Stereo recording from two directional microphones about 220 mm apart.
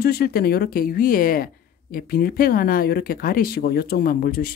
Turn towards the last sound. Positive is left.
turn(degrees=40)  # may be behind; listen again after turning